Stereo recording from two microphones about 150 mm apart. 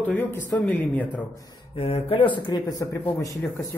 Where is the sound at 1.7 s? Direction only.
40° left (ahead or behind).